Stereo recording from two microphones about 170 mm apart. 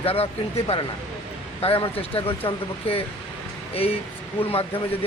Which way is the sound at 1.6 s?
35° left (ahead or behind).